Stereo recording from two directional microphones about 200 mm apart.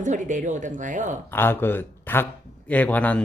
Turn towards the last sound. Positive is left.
turn(degrees=5)  # may be behind; listen again after turning